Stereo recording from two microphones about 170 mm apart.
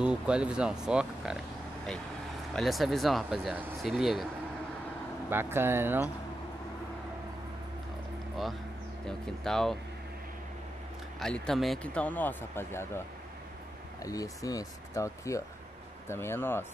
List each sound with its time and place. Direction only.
0.0 s speech: 5° right (ahead or behind)
2.5 s speech: centre (ahead or behind)
5.3 s speech: 15° right (ahead or behind)
9.0 s speech: 5° left (ahead or behind)
11.1 s speech: 5° left (ahead or behind)
14.0 s speech: 20° left (ahead or behind)